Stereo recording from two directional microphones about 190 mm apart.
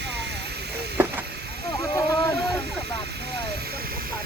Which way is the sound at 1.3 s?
60° right (ahead or behind).